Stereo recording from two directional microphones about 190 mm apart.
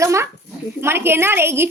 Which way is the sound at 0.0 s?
15° right (ahead or behind).